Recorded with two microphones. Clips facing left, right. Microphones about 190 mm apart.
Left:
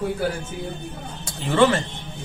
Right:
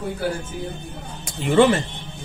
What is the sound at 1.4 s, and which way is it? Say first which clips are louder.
Speech: right 2 dB; 20° right (ahead or behind).